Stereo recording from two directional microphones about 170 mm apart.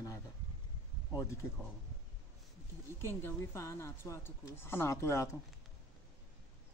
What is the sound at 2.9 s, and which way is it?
Speech, 15° left (ahead or behind).